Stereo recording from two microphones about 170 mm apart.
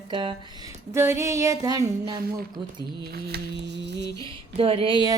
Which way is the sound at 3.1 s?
80° right.